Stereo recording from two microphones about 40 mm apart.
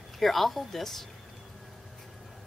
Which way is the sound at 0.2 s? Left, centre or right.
Centre.